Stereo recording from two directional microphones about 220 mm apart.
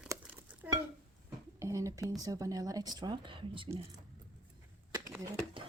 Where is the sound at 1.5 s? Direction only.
15° right (ahead or behind).